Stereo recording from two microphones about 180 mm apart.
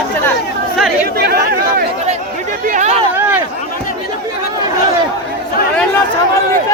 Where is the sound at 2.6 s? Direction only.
45° right (ahead or behind).